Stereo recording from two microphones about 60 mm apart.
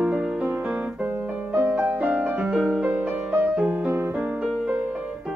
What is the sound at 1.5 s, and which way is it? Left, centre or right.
Music, right.